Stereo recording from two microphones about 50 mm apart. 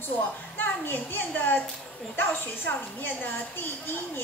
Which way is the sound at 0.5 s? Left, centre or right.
Left.